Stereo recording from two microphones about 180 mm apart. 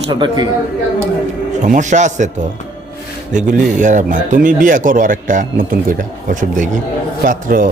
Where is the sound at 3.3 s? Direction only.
45° right (ahead or behind).